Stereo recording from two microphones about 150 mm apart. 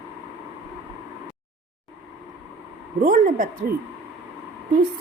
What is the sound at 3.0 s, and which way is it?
Speech, 60° right (ahead or behind).